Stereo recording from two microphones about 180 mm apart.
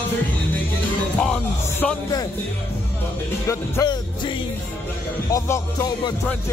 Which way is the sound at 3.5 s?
20° left (ahead or behind).